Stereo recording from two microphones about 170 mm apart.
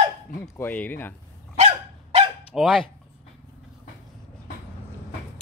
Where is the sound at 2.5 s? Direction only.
Centre (ahead or behind).